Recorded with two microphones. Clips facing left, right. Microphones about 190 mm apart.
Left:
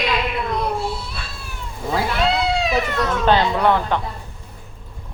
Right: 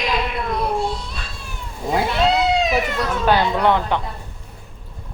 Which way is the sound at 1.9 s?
20° right (ahead or behind).